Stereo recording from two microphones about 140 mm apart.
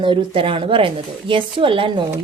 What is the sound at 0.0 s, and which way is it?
A woman's voice, 35° right (ahead or behind).